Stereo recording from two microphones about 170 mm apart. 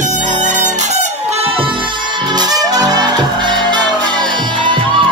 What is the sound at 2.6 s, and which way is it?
Music, 20° right (ahead or behind).